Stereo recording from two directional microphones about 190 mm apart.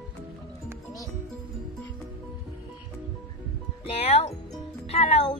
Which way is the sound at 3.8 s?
30° left (ahead or behind).